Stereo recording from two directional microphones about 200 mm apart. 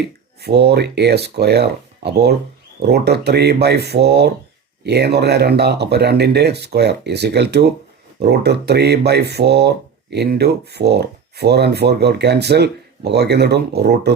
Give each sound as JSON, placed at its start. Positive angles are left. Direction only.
{"t": 0.4, "sound": "speech", "side_deg": -55}